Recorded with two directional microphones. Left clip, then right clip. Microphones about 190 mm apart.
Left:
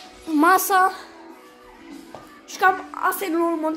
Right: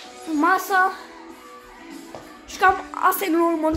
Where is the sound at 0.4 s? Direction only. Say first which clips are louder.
Left 2 dB; 50° left (ahead or behind).